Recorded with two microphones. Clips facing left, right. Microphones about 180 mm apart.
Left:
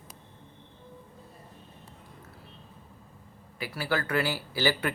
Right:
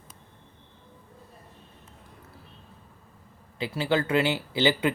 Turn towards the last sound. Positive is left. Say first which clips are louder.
# right 4 dB
turn(degrees=-20)  # may be behind; listen again after turning